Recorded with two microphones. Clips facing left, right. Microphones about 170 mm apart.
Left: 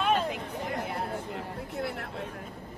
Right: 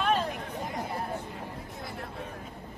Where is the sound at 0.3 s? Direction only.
70° left (ahead or behind).